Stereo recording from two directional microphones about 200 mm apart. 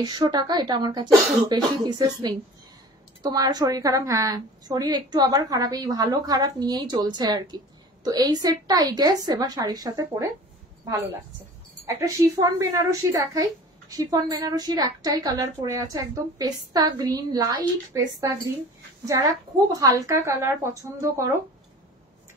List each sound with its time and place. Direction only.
0.0 s a woman's voice: 20° right (ahead or behind)
11.8 s a woman's voice: 15° right (ahead or behind)
19.7 s a woman's voice: 15° right (ahead or behind)